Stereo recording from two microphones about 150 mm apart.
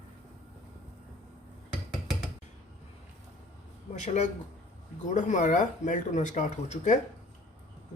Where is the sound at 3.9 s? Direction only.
50° left (ahead or behind).